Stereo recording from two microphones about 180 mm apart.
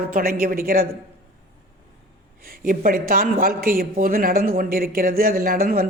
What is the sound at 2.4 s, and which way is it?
A man's voice, 55° right (ahead or behind).